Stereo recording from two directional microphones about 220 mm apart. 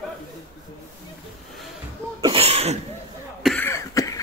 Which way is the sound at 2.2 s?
25° right (ahead or behind).